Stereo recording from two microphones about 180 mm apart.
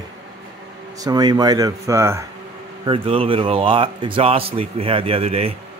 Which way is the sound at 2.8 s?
30° right (ahead or behind).